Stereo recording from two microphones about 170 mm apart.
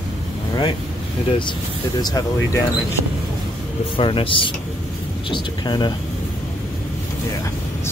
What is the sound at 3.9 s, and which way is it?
Speech, 30° left (ahead or behind).